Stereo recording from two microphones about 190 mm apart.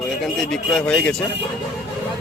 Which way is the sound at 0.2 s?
Centre (ahead or behind).